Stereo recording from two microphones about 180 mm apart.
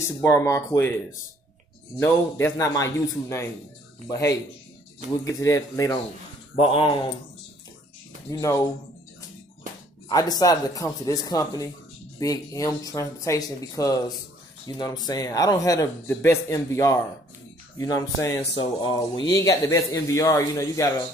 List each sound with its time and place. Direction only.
0.2 s a man's voice: 15° left (ahead or behind)
2.0 s a man's voice: 15° left (ahead or behind)
6.5 s speech: 30° left (ahead or behind)
8.3 s a man's voice: 15° left (ahead or behind)
10.0 s a man's voice: 20° left (ahead or behind)